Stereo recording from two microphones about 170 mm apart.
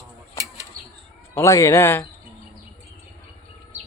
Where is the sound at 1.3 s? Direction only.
15° left (ahead or behind).